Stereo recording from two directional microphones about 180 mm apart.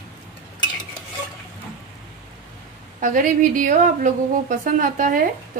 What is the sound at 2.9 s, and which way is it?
Speech, 45° right (ahead or behind).